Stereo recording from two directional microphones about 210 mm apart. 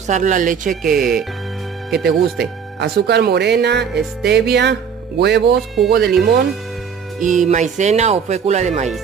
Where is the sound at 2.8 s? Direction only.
50° right (ahead or behind).